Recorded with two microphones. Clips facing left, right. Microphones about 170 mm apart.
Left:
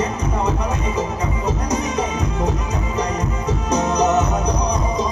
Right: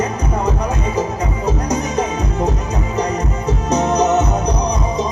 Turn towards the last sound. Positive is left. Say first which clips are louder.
# right 3 dB
turn(degrees=-30)  # may be behind; listen again after turning